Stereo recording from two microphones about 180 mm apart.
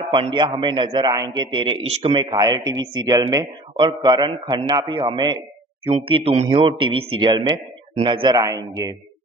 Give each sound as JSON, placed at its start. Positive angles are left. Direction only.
{"t": 0.1, "sound": "a man's voice", "side_deg": -25}
{"t": 2.2, "sound": "a man's voice", "side_deg": -20}